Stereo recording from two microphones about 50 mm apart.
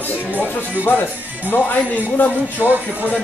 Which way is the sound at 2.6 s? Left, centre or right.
Right.